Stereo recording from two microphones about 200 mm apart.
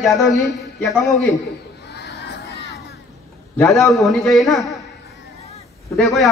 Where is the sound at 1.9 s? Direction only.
55° left (ahead or behind).